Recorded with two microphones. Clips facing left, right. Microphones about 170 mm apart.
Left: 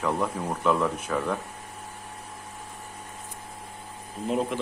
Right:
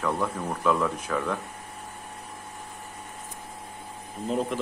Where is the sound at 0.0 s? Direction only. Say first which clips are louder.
Left 1 dB; 10° left (ahead or behind).